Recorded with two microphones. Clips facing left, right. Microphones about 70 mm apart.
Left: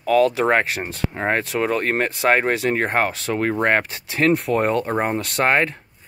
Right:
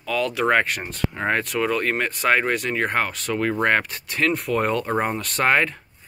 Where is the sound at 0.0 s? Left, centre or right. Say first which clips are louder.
Left 8 dB; left.